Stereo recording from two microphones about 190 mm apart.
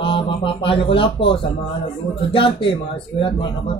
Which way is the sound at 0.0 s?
30° left (ahead or behind).